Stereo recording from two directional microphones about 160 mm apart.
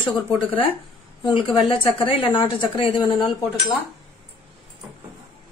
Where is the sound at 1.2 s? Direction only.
30° left (ahead or behind).